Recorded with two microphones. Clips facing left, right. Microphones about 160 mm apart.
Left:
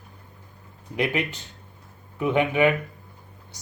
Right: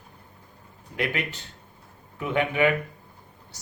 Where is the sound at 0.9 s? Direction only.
20° left (ahead or behind).